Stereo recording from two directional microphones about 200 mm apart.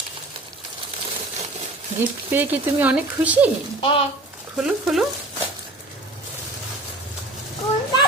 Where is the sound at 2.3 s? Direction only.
10° right (ahead or behind).